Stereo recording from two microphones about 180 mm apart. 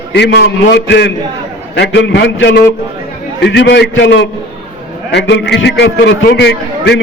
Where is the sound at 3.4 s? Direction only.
75° left (ahead or behind).